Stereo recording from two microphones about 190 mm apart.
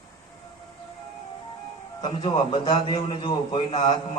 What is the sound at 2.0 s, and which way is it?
A man's voice, 30° left (ahead or behind).